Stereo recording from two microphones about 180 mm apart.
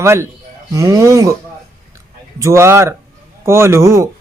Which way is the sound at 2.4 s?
15° right (ahead or behind).